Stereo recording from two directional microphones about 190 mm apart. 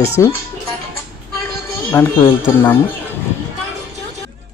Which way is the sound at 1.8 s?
10° left (ahead or behind).